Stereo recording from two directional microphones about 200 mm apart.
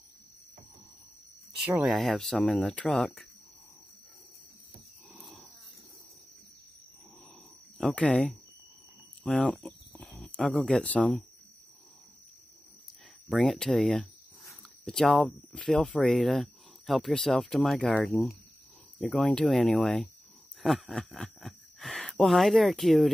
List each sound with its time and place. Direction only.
1.7 s speech: 5° right (ahead or behind)
5.1 s a sound: centre (ahead or behind)
7.7 s speech: 5° left (ahead or behind)
13.3 s speech: centre (ahead or behind)